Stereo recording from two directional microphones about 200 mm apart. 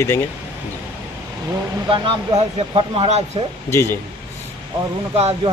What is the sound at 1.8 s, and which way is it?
Speech, 25° right (ahead or behind).